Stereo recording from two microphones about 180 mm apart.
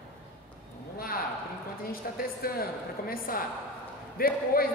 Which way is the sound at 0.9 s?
55° left (ahead or behind).